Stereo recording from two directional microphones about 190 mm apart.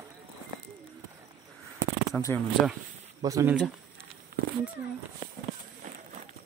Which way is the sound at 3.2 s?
15° right (ahead or behind).